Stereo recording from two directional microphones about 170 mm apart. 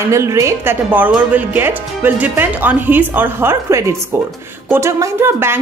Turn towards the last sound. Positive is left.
turn(degrees=-15)  # may be behind; listen again after turning